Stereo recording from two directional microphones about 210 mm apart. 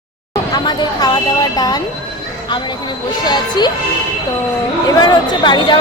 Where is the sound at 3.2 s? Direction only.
20° left (ahead or behind).